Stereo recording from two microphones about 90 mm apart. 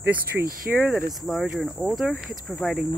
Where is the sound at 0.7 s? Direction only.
20° right (ahead or behind).